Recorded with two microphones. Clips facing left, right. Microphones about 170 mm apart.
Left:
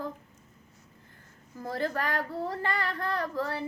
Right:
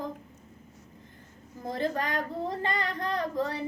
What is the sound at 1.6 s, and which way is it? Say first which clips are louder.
Speech: right 1 dB; 20° right (ahead or behind).